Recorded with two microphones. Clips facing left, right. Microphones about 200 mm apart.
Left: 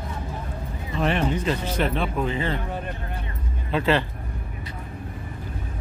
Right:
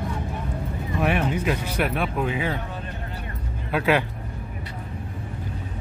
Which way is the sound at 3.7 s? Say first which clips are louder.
Even; 10° right (ahead or behind).